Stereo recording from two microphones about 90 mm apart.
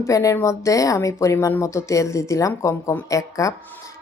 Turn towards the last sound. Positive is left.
turn(degrees=35)  # may be behind; listen again after turning